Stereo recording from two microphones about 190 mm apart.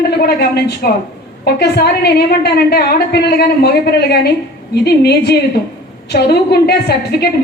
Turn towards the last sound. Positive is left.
turn(degrees=55)  # may be behind; listen again after turning